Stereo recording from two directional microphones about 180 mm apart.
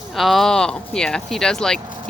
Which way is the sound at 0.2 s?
Centre (ahead or behind).